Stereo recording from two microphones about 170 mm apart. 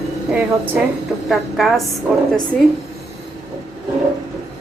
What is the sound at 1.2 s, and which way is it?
Speech, centre (ahead or behind).